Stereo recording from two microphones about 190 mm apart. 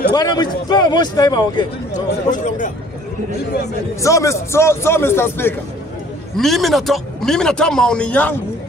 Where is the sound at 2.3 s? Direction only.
40° left (ahead or behind).